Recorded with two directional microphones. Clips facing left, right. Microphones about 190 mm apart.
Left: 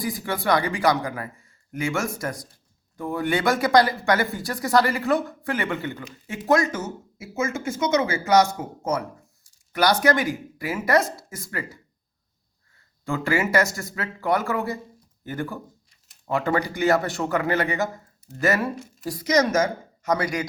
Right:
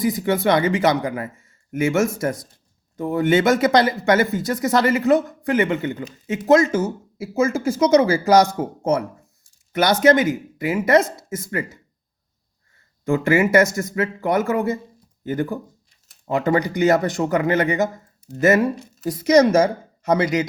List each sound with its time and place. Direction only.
0.0 s speech: 20° right (ahead or behind)
13.1 s speech: 20° right (ahead or behind)